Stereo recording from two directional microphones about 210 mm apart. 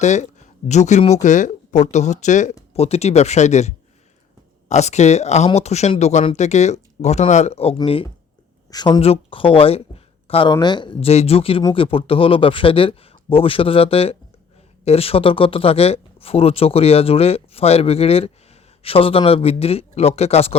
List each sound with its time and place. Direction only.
0.0 s speech: 35° left (ahead or behind)